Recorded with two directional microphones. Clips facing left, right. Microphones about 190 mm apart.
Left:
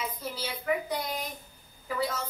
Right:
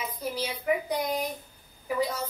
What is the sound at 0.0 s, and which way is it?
A woman's voice, 15° right (ahead or behind).